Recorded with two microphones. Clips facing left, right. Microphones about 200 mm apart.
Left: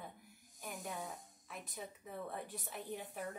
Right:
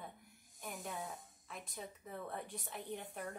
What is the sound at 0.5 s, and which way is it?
Speech, centre (ahead or behind).